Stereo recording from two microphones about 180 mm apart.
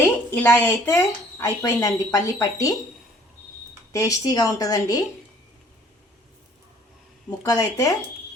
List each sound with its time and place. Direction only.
0.0 s speech: 10° left (ahead or behind)
3.9 s speech: 20° left (ahead or behind)
7.3 s speech: 20° left (ahead or behind)